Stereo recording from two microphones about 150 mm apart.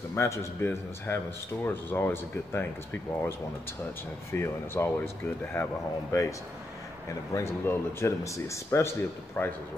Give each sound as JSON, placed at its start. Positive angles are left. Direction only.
{"t": 0.1, "sound": "a man's voice", "side_deg": 15}
{"t": 7.3, "sound": "a man's voice", "side_deg": 15}